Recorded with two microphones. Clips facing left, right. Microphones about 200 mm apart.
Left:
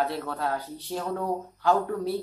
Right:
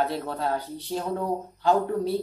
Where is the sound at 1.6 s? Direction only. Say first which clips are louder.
Right 2 dB; 30° right (ahead or behind).